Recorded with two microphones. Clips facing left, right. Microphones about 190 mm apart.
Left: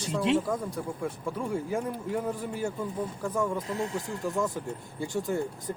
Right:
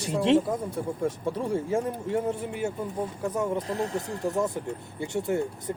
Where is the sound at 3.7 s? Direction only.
35° right (ahead or behind).